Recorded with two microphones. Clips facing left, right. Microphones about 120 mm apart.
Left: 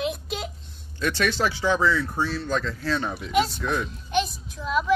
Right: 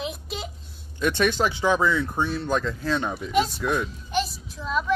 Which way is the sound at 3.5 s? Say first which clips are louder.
Right 2 dB; 5° right (ahead or behind).